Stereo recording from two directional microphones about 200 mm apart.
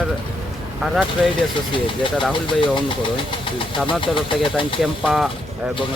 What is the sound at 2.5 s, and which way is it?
Speech, 25° left (ahead or behind).